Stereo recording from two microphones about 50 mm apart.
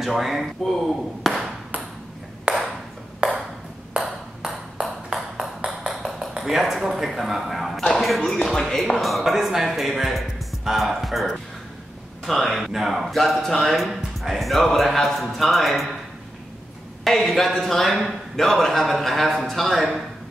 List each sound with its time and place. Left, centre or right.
0.0 s speech: centre
1.2 s ping: centre
2.5 s ping: right
5.1 s ping: right
6.5 s speech: centre
17.0 s speech: centre